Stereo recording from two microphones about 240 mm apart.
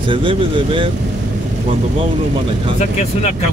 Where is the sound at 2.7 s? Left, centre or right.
Left.